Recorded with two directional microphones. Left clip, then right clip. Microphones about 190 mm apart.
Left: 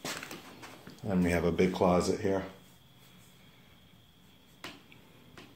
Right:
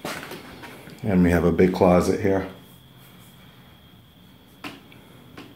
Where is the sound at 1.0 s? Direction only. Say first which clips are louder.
Right 9 dB; 25° right (ahead or behind).